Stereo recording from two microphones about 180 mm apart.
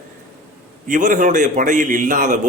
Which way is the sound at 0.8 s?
45° right (ahead or behind).